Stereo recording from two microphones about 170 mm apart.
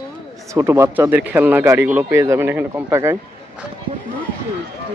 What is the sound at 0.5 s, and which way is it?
Speech, 15° right (ahead or behind).